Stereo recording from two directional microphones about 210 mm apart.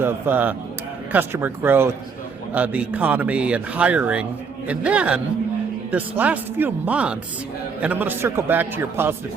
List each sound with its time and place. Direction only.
0.0 s a man's voice: 10° right (ahead or behind)